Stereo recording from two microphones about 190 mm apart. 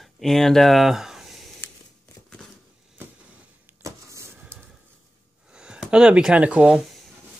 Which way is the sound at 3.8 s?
15° right (ahead or behind).